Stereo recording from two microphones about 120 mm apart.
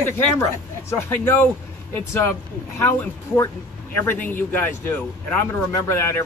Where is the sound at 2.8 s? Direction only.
25° left (ahead or behind).